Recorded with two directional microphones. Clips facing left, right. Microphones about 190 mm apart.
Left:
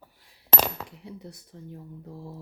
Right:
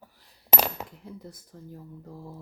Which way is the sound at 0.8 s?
15° right (ahead or behind).